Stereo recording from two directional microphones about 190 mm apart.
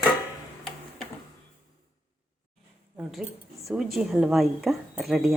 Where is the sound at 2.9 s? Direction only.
5° right (ahead or behind).